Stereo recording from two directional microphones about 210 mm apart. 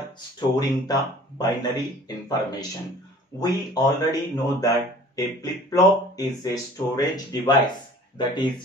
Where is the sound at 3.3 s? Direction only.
20° left (ahead or behind).